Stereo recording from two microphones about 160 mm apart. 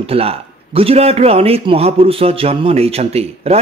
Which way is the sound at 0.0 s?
35° right (ahead or behind).